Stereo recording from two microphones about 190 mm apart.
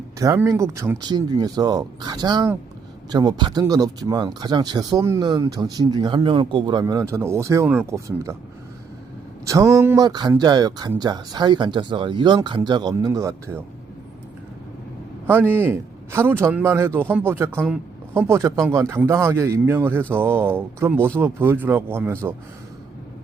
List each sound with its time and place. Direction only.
0.2 s speech: 15° right (ahead or behind)
9.5 s speech: 15° right (ahead or behind)
15.3 s a man's voice: 10° right (ahead or behind)